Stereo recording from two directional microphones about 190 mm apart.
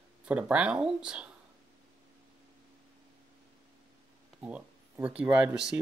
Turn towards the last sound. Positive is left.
turn(degrees=-5)  # may be behind; listen again after turning